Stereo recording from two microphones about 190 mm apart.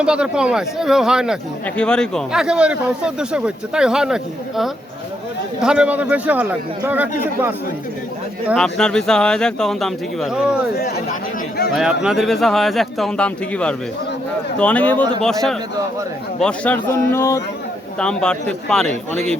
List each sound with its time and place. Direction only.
0.0 s a man's voice: 5° right (ahead or behind)
8.4 s a man's voice: centre (ahead or behind)
10.8 s speech: 55° left (ahead or behind)
11.7 s a man's voice: 5° right (ahead or behind); by 17.4 s 15° left (ahead or behind)
18.0 s a man's voice: 5° left (ahead or behind)